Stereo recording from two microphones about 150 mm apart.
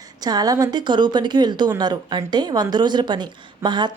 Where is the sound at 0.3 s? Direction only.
25° right (ahead or behind).